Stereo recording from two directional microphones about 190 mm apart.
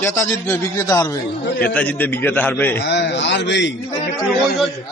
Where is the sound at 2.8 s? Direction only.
60° left (ahead or behind).